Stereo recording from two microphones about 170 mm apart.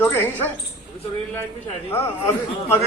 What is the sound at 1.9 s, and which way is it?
Speech, 15° left (ahead or behind).